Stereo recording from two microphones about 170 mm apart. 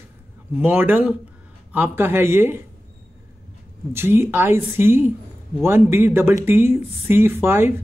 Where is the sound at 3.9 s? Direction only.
15° right (ahead or behind).